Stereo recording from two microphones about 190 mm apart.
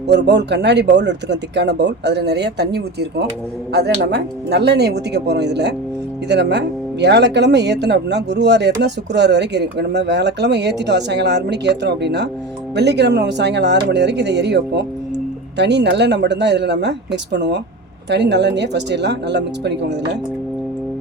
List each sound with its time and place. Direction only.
0.1 s speech: 65° right (ahead or behind)